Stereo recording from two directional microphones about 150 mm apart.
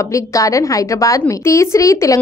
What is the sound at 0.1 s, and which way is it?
A woman's voice, 20° left (ahead or behind).